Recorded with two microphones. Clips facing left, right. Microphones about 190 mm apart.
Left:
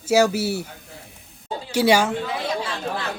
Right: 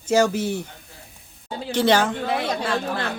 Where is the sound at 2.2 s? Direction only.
65° right (ahead or behind).